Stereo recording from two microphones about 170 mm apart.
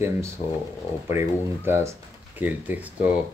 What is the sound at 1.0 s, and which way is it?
Speech, 15° right (ahead or behind).